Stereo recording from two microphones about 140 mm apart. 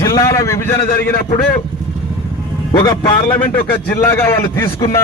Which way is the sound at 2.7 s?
30° left (ahead or behind).